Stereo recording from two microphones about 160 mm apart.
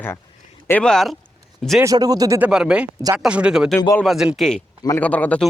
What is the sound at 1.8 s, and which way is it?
Speech, 25° right (ahead or behind).